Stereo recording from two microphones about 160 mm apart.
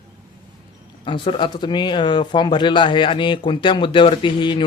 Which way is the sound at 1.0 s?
30° left (ahead or behind).